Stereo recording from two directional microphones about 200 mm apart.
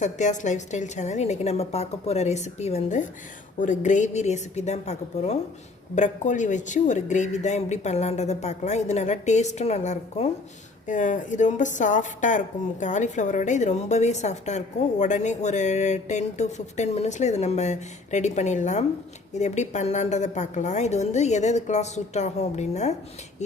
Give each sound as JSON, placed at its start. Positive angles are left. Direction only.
{"t": 0.0, "sound": "a woman's voice", "side_deg": 35}